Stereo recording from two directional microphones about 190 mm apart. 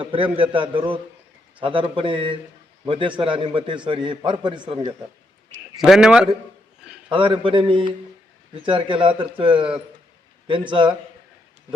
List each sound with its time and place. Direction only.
0.0 s a man's voice: 30° right (ahead or behind)
5.7 s a man's voice: centre (ahead or behind)
7.1 s a man's voice: 25° right (ahead or behind)